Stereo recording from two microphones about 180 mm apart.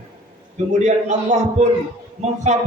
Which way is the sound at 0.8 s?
40° right (ahead or behind).